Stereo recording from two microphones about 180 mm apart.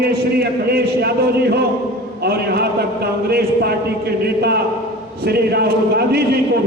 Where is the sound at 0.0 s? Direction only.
60° right (ahead or behind).